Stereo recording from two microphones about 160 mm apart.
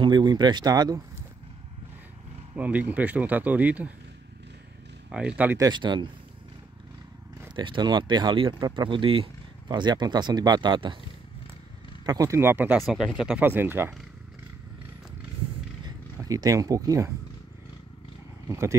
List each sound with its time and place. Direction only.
0.0 s speech: 30° right (ahead or behind)
2.5 s speech: 10° right (ahead or behind)
5.1 s speech: 5° right (ahead or behind)
5.6 s speech: 30° right (ahead or behind)
7.5 s speech: 30° right (ahead or behind)
12.1 s speech: 20° right (ahead or behind); by 13.5 s centre (ahead or behind)
13.5 s speech: 15° right (ahead or behind)
15.8 s speech: 25° right (ahead or behind)
18.5 s speech: 20° right (ahead or behind)